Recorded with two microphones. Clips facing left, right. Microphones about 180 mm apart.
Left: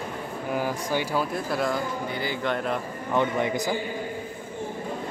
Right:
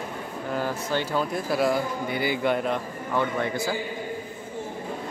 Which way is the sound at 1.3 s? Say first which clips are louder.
Right 3 dB; 5° right (ahead or behind).